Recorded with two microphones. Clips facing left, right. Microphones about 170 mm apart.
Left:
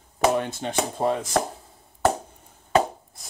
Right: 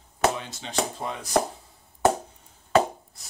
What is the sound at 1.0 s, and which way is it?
Speech, 45° left (ahead or behind).